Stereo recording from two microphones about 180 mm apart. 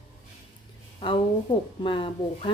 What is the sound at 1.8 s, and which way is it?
Speech, 25° left (ahead or behind).